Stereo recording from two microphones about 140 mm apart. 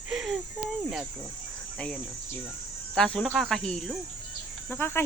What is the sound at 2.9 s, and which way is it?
Speech, 5° left (ahead or behind).